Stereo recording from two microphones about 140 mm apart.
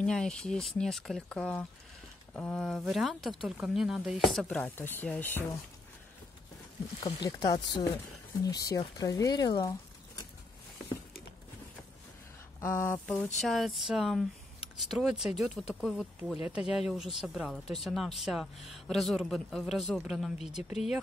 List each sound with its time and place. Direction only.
0.0 s speech: 5° left (ahead or behind)
7.0 s speech: 30° left (ahead or behind)
12.5 s a sound: 20° left (ahead or behind)
13.0 s speech: 5° left (ahead or behind)